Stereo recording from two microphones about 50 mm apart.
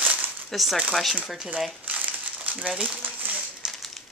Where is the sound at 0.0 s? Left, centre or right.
Right.